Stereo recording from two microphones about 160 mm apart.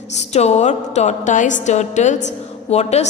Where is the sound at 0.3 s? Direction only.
45° left (ahead or behind).